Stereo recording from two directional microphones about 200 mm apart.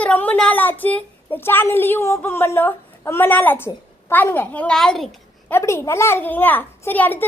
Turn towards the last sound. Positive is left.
turn(degrees=10)  # may be behind; listen again after turning